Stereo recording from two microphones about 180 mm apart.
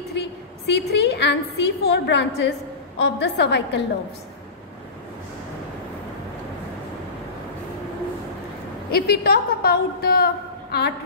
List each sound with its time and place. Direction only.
0.1 s a woman's voice: 70° left (ahead or behind)
8.9 s a woman's voice: 60° left (ahead or behind)